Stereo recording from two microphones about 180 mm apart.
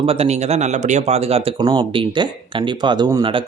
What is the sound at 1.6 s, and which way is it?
A man's voice, 25° right (ahead or behind).